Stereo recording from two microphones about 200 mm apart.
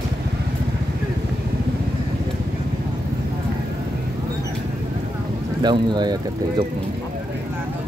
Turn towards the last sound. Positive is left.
turn(degrees=-20)  # may be behind; listen again after turning